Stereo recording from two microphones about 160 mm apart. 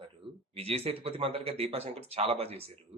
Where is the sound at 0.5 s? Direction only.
40° right (ahead or behind).